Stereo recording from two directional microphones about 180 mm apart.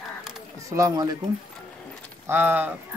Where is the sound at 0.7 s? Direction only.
20° right (ahead or behind).